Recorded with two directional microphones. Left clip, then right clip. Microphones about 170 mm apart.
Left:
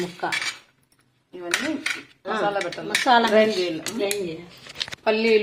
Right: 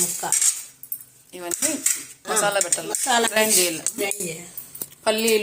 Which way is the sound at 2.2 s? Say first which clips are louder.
Right 2 dB; 25° right (ahead or behind).